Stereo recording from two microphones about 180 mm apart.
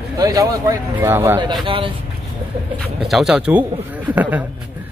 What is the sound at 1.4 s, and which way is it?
Speech, 25° right (ahead or behind).